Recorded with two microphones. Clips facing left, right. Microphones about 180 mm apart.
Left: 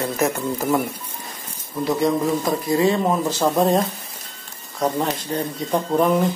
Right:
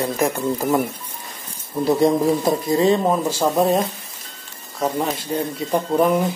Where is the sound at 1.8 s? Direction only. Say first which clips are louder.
Right 3 dB; 35° right (ahead or behind).